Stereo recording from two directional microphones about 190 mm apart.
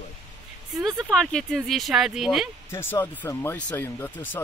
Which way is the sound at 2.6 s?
15° left (ahead or behind).